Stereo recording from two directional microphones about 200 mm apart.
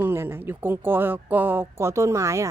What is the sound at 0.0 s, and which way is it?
A woman's voice, 10° right (ahead or behind).